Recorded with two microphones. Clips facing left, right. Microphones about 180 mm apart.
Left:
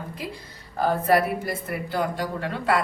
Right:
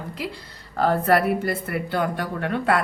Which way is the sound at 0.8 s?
65° right (ahead or behind).